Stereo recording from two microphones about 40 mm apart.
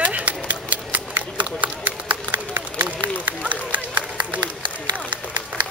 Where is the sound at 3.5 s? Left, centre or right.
Right.